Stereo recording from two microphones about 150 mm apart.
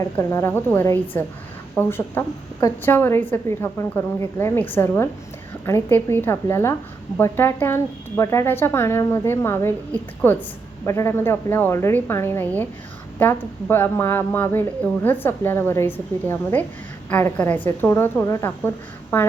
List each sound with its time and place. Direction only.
0.2 s speech: 15° left (ahead or behind)